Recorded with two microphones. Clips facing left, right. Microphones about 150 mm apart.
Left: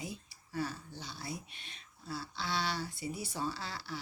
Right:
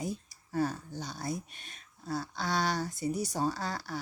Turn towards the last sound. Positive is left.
turn(degrees=-45)  # may be behind; listen again after turning